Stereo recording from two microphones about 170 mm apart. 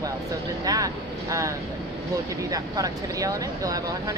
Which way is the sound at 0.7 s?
20° right (ahead or behind).